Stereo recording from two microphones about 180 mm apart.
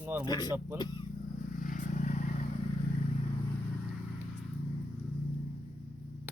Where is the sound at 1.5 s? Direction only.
50° left (ahead or behind).